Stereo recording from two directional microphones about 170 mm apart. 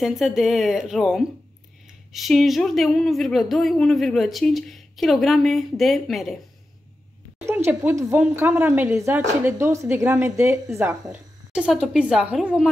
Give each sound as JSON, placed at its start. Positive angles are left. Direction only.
{"t": 0.0, "sound": "speech", "side_deg": 0}
{"t": 7.4, "sound": "a woman's voice", "side_deg": -15}
{"t": 11.5, "sound": "speech", "side_deg": -5}